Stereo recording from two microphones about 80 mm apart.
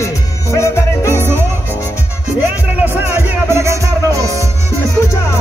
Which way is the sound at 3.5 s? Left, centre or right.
Right.